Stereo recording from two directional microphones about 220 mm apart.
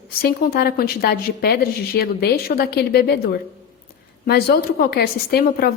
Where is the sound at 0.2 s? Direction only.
45° left (ahead or behind).